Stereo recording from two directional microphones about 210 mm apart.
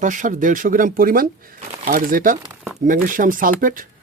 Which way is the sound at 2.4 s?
Centre (ahead or behind).